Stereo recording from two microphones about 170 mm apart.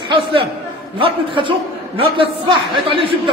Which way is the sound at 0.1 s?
30° right (ahead or behind).